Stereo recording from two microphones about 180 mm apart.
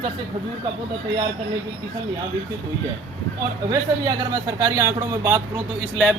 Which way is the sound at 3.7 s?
20° right (ahead or behind).